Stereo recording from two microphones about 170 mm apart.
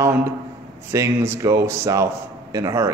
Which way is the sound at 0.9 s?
15° right (ahead or behind).